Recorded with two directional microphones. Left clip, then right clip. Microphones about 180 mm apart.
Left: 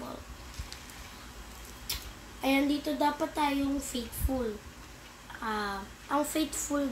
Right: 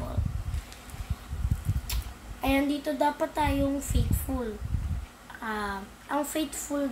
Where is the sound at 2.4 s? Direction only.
10° right (ahead or behind).